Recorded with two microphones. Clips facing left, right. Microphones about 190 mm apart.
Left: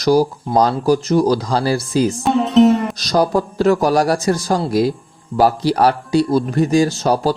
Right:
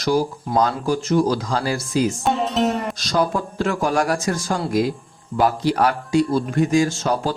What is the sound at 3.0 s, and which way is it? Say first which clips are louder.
Speech: left 5 dB; 40° left (ahead or behind).